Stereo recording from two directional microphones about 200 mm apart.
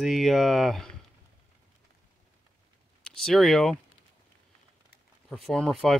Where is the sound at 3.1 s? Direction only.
Centre (ahead or behind).